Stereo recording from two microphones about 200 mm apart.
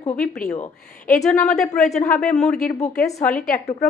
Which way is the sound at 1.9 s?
35° left (ahead or behind).